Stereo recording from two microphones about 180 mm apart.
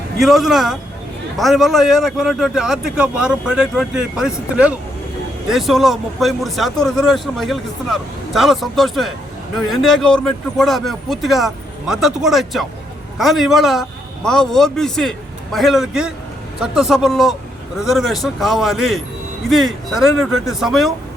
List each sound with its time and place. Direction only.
0.2 s a man's voice: centre (ahead or behind)